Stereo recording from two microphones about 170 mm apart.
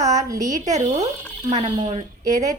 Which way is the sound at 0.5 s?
45° right (ahead or behind).